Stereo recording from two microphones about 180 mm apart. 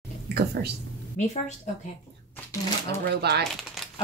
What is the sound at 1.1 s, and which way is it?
Speech, 40° left (ahead or behind).